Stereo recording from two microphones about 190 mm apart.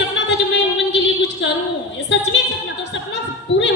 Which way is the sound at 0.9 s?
65° left (ahead or behind).